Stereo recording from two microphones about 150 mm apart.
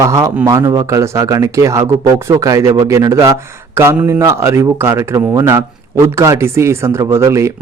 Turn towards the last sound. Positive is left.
turn(degrees=-20)  # may be behind; listen again after turning